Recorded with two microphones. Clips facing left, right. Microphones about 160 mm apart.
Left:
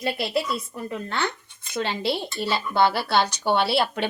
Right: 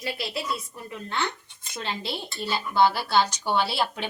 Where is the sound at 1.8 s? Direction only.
70° left (ahead or behind).